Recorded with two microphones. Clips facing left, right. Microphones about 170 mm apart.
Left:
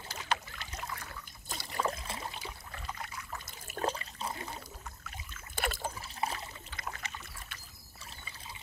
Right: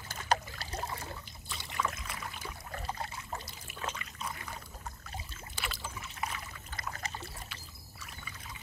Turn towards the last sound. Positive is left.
turn(degrees=-35)  # may be behind; listen again after turning